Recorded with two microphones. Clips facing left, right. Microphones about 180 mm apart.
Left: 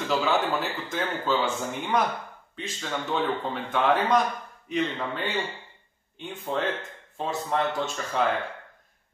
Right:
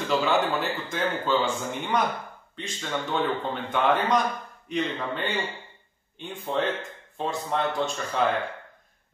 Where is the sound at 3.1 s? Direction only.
Centre (ahead or behind).